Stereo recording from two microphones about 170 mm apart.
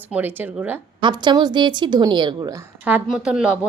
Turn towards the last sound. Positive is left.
turn(degrees=-5)  # may be behind; listen again after turning